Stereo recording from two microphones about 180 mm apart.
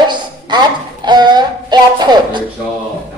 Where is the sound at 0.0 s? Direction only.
25° right (ahead or behind).